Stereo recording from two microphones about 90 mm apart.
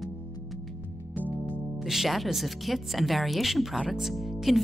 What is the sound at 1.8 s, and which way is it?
Speech, centre (ahead or behind).